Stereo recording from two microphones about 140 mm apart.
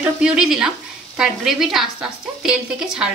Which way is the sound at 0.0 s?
5° right (ahead or behind).